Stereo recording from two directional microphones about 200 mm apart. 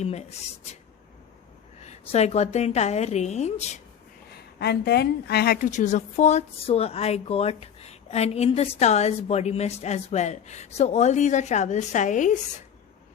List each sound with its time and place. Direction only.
0.0 s a woman's voice: 35° left (ahead or behind)
1.8 s a woman's voice: 35° left (ahead or behind)
4.6 s a woman's voice: 55° left (ahead or behind); by 12.4 s 40° left (ahead or behind)